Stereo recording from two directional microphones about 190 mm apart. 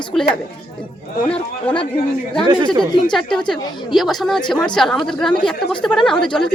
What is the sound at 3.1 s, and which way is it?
A woman's voice, 5° left (ahead or behind).